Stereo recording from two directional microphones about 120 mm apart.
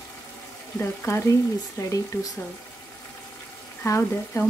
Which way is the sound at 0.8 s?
20° left (ahead or behind).